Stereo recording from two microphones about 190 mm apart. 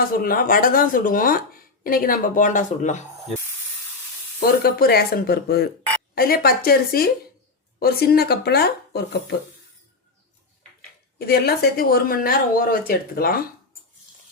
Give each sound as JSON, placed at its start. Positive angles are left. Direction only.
{"t": 0.1, "sound": "speech", "side_deg": 50}
{"t": 4.4, "sound": "speech", "side_deg": 55}
{"t": 11.2, "sound": "speech", "side_deg": 55}